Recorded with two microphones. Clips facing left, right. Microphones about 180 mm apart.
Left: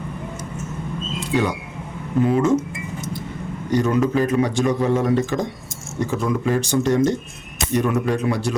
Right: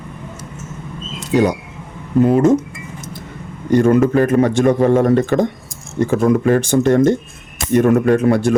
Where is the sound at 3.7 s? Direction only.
50° right (ahead or behind).